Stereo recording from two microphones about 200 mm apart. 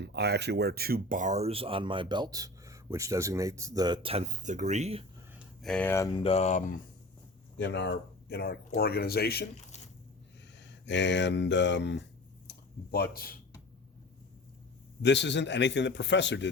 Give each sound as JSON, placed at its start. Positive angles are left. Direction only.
{"t": 0.0, "sound": "speech", "side_deg": -55}
{"t": 5.6, "sound": "speech", "side_deg": 5}
{"t": 7.6, "sound": "speech", "side_deg": 60}
{"t": 10.6, "sound": "speech", "side_deg": 60}
{"t": 12.5, "sound": "a sound", "side_deg": 50}
{"t": 15.0, "sound": "a man's voice", "side_deg": 60}